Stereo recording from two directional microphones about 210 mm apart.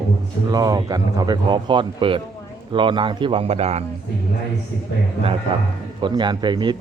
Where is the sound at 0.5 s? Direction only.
15° right (ahead or behind).